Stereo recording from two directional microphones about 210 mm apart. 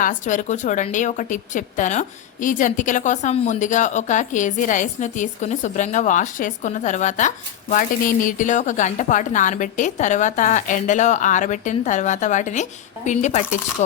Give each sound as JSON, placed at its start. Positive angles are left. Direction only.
{"t": 0.0, "sound": "a woman's voice", "side_deg": 40}